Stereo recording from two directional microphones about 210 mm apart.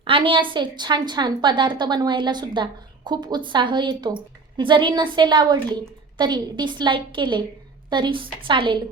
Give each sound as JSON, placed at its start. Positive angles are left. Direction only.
{"t": 0.0, "sound": "a woman's voice", "side_deg": -25}